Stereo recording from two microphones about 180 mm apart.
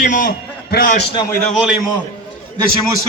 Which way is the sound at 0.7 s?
55° left (ahead or behind).